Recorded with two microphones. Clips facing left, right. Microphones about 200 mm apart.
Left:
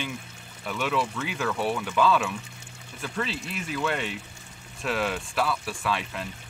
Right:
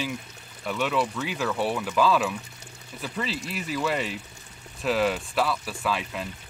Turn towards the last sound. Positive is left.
turn(degrees=0)  # may be behind; listen again after turning